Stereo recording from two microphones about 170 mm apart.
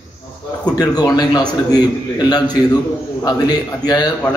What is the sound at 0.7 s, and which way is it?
A man's voice, 20° left (ahead or behind).